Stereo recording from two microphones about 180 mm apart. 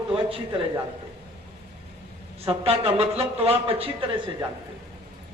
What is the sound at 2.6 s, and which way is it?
A man's voice, 35° right (ahead or behind).